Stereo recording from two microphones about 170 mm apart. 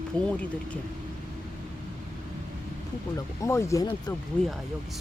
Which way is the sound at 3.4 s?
15° left (ahead or behind).